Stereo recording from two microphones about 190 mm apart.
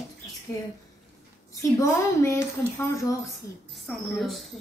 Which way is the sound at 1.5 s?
15° left (ahead or behind).